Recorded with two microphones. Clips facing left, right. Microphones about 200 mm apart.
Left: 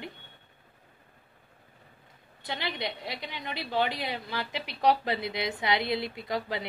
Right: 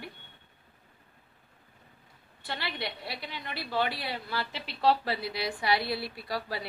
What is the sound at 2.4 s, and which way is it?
A woman's voice, 20° left (ahead or behind).